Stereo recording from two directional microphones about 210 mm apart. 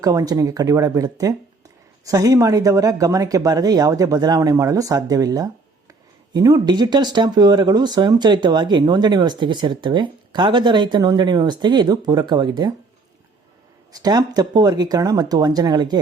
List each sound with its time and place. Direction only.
0.0 s speech: 15° right (ahead or behind)
13.9 s speech: 20° right (ahead or behind)